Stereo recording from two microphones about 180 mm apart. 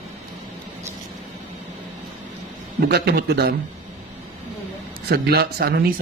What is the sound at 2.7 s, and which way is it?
Speech, 65° right (ahead or behind).